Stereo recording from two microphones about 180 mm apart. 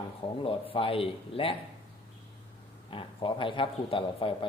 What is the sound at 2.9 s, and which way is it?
A man's voice, 30° left (ahead or behind).